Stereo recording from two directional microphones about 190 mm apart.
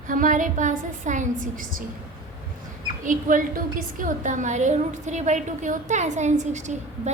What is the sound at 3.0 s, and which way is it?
A woman's voice, 45° right (ahead or behind).